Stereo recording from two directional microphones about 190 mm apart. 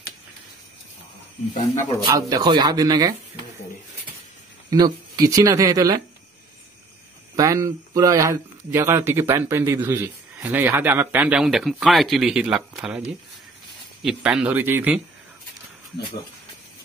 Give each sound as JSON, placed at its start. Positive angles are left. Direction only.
{"t": 2.0, "sound": "speech", "side_deg": -20}
{"t": 4.6, "sound": "a man's voice", "side_deg": -20}
{"t": 7.3, "sound": "a man's voice", "side_deg": -15}
{"t": 14.0, "sound": "a man's voice", "side_deg": -5}